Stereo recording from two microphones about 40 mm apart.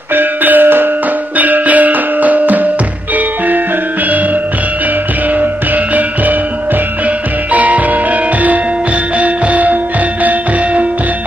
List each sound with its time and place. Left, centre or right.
0.1 s music: right
1.4 s music: right
7.5 s music: right
9.2 s music: right